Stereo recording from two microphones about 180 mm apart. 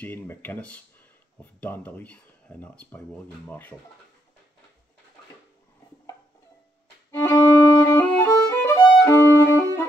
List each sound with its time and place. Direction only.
0.0 s speech: 10° left (ahead or behind)
7.1 s violin: 15° left (ahead or behind)